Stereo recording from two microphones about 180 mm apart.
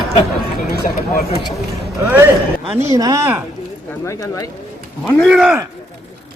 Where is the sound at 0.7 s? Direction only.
60° left (ahead or behind).